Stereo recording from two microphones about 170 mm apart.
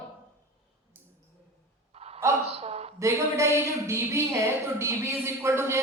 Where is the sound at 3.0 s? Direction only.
15° right (ahead or behind).